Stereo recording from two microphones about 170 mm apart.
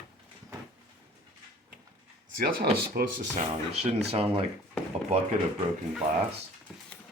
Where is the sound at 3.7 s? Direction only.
40° right (ahead or behind).